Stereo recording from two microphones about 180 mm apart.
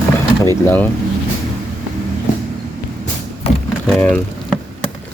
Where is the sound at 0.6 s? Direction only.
10° left (ahead or behind).